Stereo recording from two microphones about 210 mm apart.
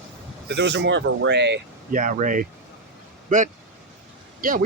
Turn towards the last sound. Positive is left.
turn(degrees=-40)  # may be behind; listen again after turning